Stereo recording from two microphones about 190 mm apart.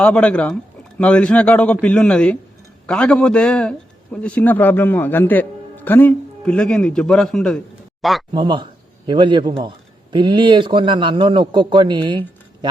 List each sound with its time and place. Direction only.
0.0 s a man's voice: 5° left (ahead or behind)
8.3 s a man's voice: 25° right (ahead or behind)